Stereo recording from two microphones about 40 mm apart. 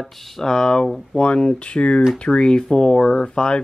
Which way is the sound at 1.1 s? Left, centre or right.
Left.